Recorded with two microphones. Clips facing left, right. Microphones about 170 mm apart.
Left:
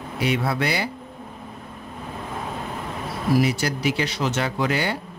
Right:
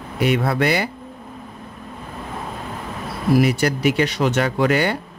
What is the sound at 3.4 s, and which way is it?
Speech, 55° right (ahead or behind).